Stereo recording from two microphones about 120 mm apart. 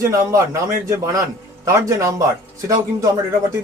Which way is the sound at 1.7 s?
25° right (ahead or behind).